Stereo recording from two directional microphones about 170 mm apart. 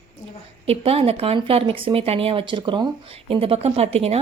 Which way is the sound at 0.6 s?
35° right (ahead or behind).